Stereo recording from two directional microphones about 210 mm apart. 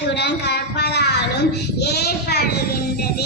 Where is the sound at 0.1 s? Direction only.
55° left (ahead or behind).